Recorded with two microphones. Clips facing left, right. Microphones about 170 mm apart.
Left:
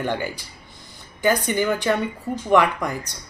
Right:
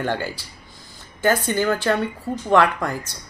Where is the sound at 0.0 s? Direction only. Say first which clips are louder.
Right 1 dB; 15° left (ahead or behind).